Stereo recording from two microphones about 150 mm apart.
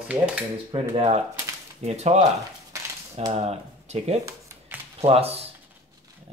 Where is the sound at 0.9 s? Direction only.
45° right (ahead or behind).